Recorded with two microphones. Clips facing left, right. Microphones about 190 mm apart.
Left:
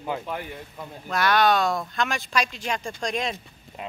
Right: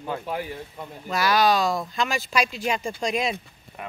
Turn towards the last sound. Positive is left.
turn(degrees=-10)  # may be behind; listen again after turning